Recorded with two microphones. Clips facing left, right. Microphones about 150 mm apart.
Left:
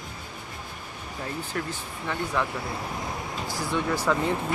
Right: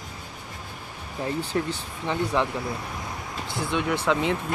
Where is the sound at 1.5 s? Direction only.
20° right (ahead or behind).